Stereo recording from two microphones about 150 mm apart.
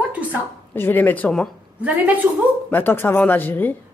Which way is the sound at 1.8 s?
10° right (ahead or behind).